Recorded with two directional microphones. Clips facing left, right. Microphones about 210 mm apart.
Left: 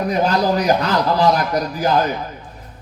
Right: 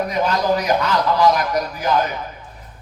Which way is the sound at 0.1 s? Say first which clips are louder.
Left 5 dB; 35° left (ahead or behind).